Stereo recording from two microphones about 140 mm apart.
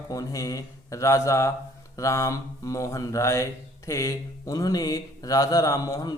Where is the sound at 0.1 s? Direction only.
25° left (ahead or behind).